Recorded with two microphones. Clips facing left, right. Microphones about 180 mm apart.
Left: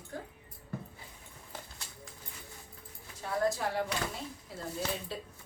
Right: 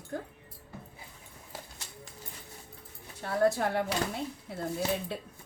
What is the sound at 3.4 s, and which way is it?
Speech, 60° right (ahead or behind).